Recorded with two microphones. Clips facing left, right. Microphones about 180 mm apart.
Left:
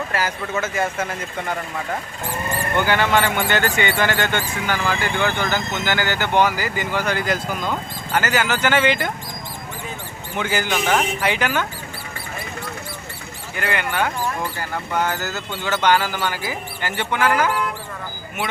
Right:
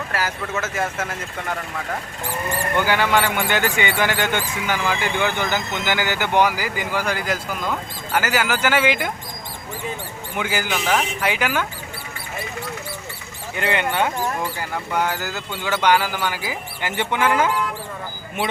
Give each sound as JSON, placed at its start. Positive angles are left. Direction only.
{"t": 0.1, "sound": "speech", "side_deg": 0}
{"t": 2.8, "sound": "speech", "side_deg": -10}
{"t": 10.3, "sound": "speech", "side_deg": -5}
{"t": 13.6, "sound": "speech", "side_deg": -25}
{"t": 14.6, "sound": "speech", "side_deg": -10}